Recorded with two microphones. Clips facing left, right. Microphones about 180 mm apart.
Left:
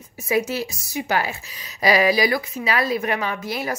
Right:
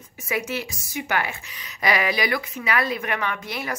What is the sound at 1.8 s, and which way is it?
A woman's voice, 30° left (ahead or behind).